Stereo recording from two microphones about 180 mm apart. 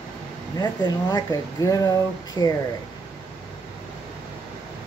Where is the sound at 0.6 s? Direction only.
20° left (ahead or behind).